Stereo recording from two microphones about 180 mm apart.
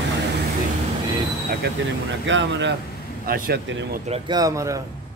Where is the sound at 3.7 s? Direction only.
75° right (ahead or behind).